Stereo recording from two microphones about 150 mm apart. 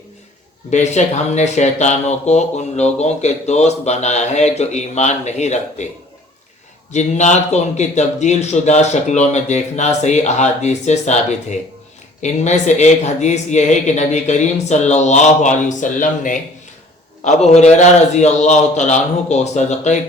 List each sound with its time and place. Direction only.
0.7 s speech: 50° left (ahead or behind)
6.9 s speech: 50° left (ahead or behind)
17.2 s speech: 50° left (ahead or behind)